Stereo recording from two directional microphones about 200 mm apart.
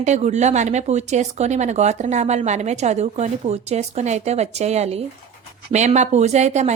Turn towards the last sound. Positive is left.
turn(degrees=-35)  # may be behind; listen again after turning